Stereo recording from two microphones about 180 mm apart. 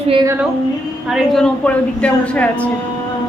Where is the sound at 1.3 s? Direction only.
5° left (ahead or behind).